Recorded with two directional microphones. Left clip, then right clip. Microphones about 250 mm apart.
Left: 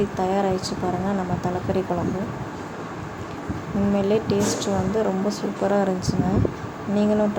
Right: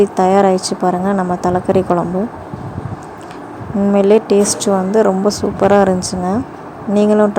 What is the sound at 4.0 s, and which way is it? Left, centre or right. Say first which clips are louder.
A woman's voice: right 12 dB; right.